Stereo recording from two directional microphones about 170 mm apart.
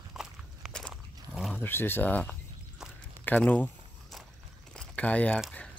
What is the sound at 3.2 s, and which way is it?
Walk, 10° left (ahead or behind).